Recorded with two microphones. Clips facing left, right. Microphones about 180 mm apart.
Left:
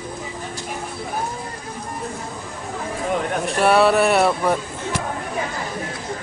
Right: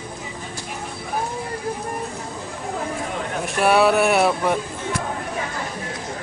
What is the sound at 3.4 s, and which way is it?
Speech, centre (ahead or behind).